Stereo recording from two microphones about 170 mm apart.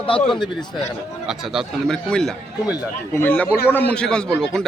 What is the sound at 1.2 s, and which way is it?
A man's voice, 5° right (ahead or behind).